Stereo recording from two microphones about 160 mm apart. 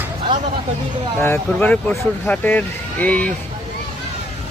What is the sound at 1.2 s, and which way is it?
Speech, 10° left (ahead or behind).